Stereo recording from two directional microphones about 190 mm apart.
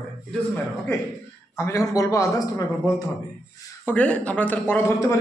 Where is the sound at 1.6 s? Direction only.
15° left (ahead or behind).